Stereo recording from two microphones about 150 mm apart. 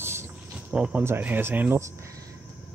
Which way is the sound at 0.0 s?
15° right (ahead or behind).